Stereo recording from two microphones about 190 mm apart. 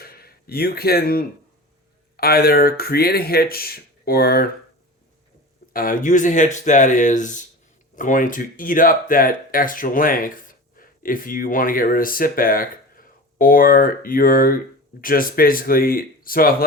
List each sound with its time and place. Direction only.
0.0 s a sound: 55° left (ahead or behind)
2.1 s speech: 55° left (ahead or behind)
5.7 s speech: 45° left (ahead or behind)